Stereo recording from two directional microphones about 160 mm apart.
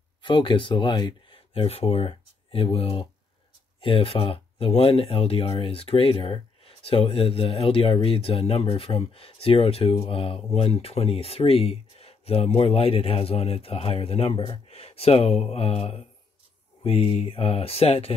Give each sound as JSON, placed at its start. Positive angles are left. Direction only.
{"t": 0.2, "sound": "speech", "side_deg": 30}